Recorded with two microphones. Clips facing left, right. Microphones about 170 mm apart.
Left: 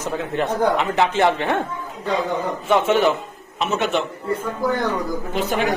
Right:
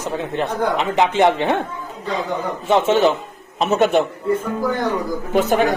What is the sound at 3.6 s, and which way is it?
Speech, 45° right (ahead or behind).